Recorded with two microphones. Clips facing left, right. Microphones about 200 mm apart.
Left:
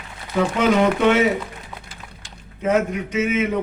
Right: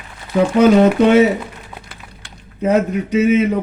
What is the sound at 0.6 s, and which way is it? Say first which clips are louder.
Speech: right 7 dB; 40° right (ahead or behind).